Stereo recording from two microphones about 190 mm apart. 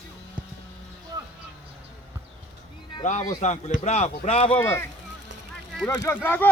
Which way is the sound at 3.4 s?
35° left (ahead or behind).